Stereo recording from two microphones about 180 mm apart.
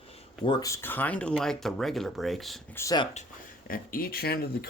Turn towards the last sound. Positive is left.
turn(degrees=60)  # may be behind; listen again after turning